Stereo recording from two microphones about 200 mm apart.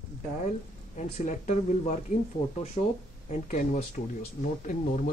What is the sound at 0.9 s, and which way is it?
Speech, 35° left (ahead or behind).